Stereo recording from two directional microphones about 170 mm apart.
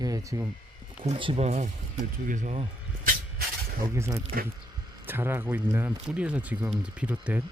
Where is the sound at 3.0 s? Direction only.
60° right (ahead or behind).